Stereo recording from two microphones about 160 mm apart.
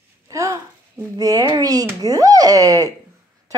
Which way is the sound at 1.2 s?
25° right (ahead or behind).